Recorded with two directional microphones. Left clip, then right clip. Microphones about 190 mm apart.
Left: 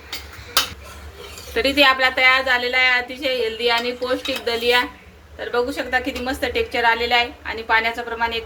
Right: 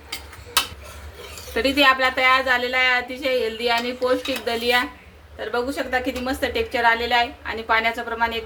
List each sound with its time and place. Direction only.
1.5 s speech: 30° right (ahead or behind)